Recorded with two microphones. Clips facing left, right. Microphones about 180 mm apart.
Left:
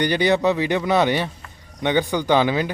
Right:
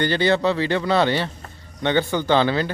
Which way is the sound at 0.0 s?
15° left (ahead or behind).